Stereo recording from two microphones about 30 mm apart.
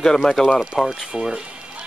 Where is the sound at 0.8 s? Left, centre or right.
Centre.